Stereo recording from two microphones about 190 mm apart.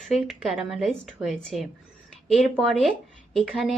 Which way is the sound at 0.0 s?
Centre (ahead or behind).